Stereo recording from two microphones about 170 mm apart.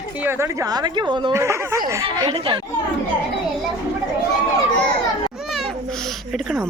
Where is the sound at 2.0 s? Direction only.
30° right (ahead or behind).